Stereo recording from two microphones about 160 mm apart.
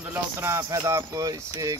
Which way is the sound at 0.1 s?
15° right (ahead or behind).